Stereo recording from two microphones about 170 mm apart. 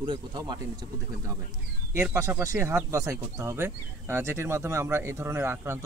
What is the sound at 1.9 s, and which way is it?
Speech, 15° right (ahead or behind).